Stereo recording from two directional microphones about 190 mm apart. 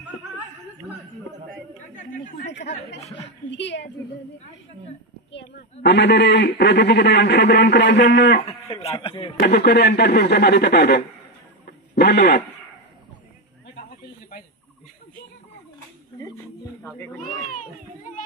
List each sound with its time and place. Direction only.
2.0 s chatter: 45° left (ahead or behind)
3.0 s a woman's voice: 35° left (ahead or behind)
3.4 s a woman's voice: 70° left (ahead or behind)
5.3 s a man's voice: 65° left (ahead or behind)
8.8 s speech: 25° left (ahead or behind)
9.4 s a man's voice: 60° left (ahead or behind)
11.6 s a sound: 60° left (ahead or behind)
17.2 s a sound: 45° left (ahead or behind)